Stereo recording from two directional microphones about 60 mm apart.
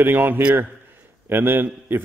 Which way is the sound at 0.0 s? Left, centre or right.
Right.